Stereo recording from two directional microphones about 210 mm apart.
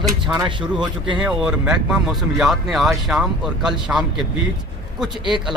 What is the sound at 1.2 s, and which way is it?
Speech, 5° right (ahead or behind).